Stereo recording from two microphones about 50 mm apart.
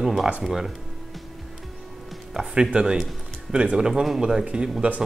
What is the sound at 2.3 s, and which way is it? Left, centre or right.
Speech, centre.